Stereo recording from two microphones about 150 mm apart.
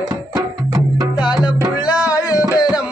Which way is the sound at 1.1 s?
30° left (ahead or behind).